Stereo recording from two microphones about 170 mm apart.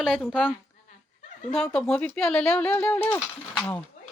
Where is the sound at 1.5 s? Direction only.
5° left (ahead or behind).